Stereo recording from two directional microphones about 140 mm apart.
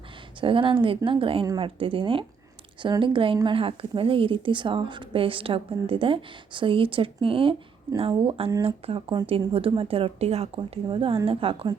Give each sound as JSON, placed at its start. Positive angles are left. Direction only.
{"t": 0.3, "sound": "a woman's voice", "side_deg": -40}